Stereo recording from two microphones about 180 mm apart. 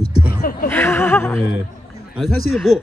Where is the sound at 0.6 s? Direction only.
15° left (ahead or behind).